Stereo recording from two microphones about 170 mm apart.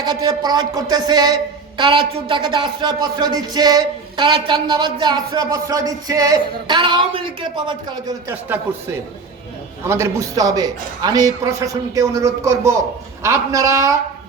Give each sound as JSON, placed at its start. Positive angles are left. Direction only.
{"t": 0.0, "sound": "speech", "side_deg": -25}
{"t": 8.3, "sound": "a man's voice", "side_deg": -15}